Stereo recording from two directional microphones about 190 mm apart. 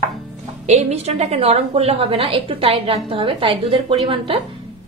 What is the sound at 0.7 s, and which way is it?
A woman's voice, 35° right (ahead or behind).